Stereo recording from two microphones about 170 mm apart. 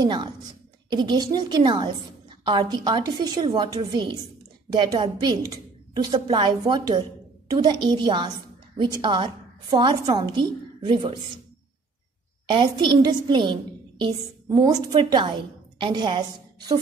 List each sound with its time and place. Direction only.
0.0 s a woman's voice: 25° right (ahead or behind)
12.4 s a woman's voice: 30° right (ahead or behind)